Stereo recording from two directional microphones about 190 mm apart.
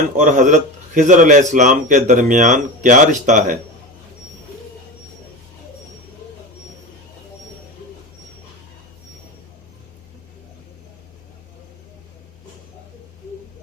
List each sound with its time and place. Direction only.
0.2 s a man's voice: 40° right (ahead or behind)